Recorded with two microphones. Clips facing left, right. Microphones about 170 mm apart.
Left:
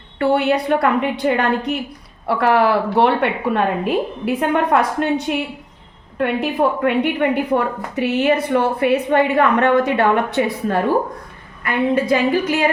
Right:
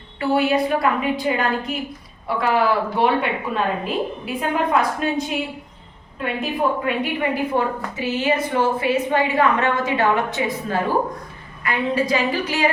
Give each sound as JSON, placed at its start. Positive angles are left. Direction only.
{"t": 0.2, "sound": "a woman's voice", "side_deg": 65}